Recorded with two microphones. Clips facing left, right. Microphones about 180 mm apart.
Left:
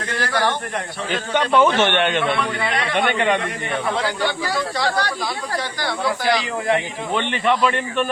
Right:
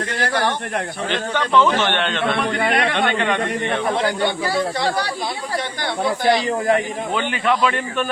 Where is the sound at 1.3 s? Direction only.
15° left (ahead or behind).